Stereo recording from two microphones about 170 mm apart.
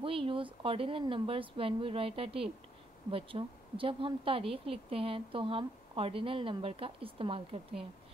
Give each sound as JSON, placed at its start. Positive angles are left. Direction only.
{"t": 0.0, "sound": "speech", "side_deg": -30}